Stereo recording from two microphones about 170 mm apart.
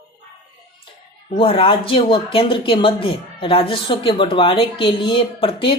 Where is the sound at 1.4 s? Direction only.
30° left (ahead or behind).